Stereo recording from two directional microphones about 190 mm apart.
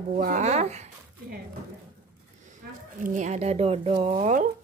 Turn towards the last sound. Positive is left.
turn(degrees=-40)  # may be behind; listen again after turning